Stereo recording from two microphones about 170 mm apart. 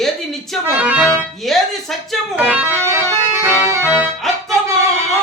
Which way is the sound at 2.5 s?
15° right (ahead or behind).